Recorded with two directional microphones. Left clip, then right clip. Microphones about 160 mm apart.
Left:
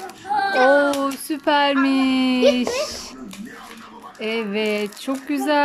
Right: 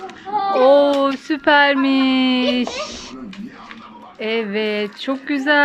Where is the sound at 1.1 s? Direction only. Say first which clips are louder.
Right 5 dB; 10° left (ahead or behind).